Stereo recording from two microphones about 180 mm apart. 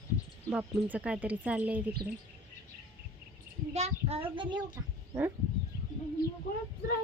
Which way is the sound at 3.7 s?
40° right (ahead or behind).